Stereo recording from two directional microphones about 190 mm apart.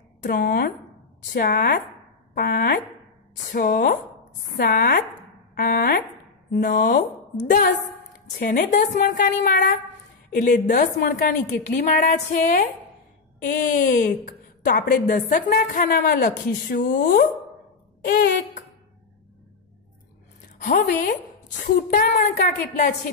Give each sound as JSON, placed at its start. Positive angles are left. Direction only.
{"t": 0.2, "sound": "a woman's voice", "side_deg": 50}
{"t": 20.6, "sound": "a woman's voice", "side_deg": 50}